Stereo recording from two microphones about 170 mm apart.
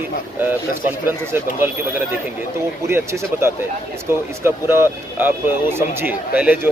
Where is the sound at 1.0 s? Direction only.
15° right (ahead or behind).